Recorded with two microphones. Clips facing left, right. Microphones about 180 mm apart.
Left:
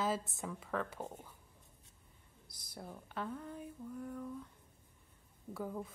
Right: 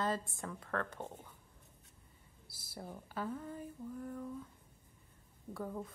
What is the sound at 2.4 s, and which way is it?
Speech, 5° right (ahead or behind).